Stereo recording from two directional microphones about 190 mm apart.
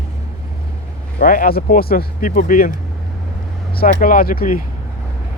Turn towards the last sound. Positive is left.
turn(degrees=50)  # may be behind; listen again after turning